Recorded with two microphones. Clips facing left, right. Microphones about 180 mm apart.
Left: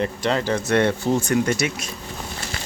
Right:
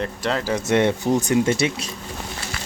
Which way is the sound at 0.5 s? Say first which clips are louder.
Right 1 dB; 20° right (ahead or behind).